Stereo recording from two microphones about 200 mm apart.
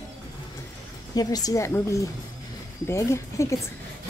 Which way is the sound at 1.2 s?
20° left (ahead or behind).